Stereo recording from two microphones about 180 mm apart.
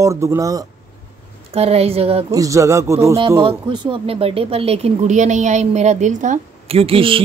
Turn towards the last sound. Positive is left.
turn(degrees=-30)  # may be behind; listen again after turning